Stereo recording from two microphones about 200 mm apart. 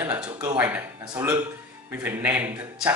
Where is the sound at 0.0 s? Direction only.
10° right (ahead or behind).